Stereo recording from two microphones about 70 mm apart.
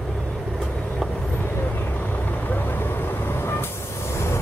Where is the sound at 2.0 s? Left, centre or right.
Left.